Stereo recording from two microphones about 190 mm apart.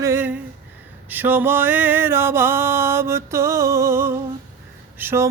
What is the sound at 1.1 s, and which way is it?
Mantra, 10° right (ahead or behind).